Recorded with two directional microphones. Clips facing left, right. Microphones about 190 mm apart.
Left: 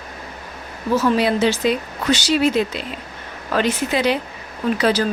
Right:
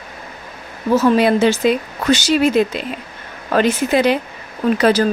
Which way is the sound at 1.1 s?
50° right (ahead or behind).